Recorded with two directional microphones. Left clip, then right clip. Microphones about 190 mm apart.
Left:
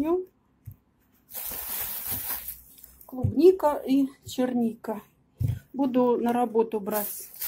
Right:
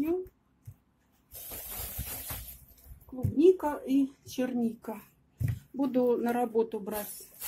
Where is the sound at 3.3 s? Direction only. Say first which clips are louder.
Left 5 dB; 20° left (ahead or behind).